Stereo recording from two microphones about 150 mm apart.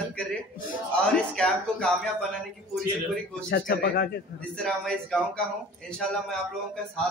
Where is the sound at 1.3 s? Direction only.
5° left (ahead or behind).